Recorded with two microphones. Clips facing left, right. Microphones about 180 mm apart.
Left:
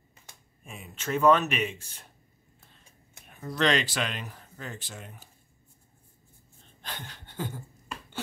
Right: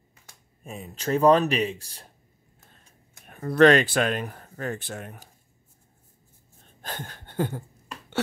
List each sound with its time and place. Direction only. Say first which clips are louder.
0.7 s speech: right 6 dB; 35° right (ahead or behind)
3.3 s speech: right 10 dB; 55° right (ahead or behind)
6.8 s a sound: right 5 dB; 50° right (ahead or behind)